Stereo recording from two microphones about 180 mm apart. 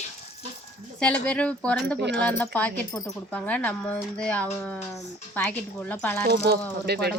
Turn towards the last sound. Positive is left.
turn(degrees=-65)  # may be behind; listen again after turning